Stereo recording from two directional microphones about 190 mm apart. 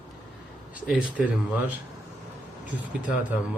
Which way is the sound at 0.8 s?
5° right (ahead or behind).